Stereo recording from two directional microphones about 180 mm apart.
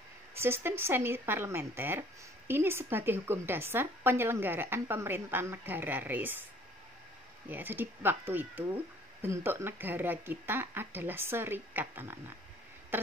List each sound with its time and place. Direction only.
0.3 s speech: 15° right (ahead or behind)
7.4 s speech: 10° right (ahead or behind)
12.9 s a sound: 10° right (ahead or behind)